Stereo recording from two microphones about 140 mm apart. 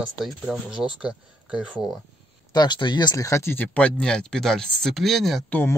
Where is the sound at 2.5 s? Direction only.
30° left (ahead or behind); by 5.4 s centre (ahead or behind).